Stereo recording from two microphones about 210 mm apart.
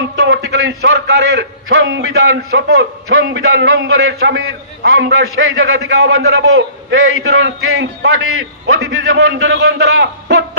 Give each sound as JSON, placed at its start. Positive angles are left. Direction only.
{"t": 0.3, "sound": "a sound", "side_deg": -65}
{"t": 0.7, "sound": "a man's voice", "side_deg": -50}
{"t": 2.5, "sound": "a man's voice", "side_deg": -55}
{"t": 9.1, "sound": "a man's voice", "side_deg": -50}